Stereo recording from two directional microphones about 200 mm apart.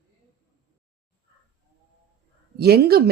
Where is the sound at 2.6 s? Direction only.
50° right (ahead or behind).